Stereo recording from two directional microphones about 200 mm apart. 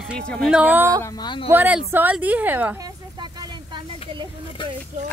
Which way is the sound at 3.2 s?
20° right (ahead or behind).